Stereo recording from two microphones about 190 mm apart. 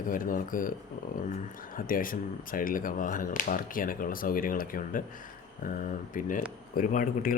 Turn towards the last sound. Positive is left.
turn(degrees=45)  # may be behind; listen again after turning